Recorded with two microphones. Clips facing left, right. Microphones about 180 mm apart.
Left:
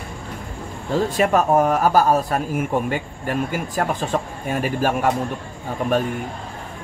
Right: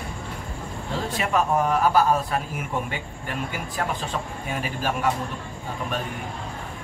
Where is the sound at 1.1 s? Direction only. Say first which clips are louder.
Left 5 dB; 45° left (ahead or behind).